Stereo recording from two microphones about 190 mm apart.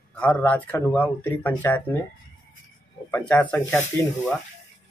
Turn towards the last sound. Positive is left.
turn(degrees=10)  # may be behind; listen again after turning